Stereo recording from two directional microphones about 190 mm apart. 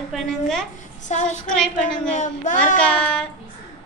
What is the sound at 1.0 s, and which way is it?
Speech, 40° left (ahead or behind).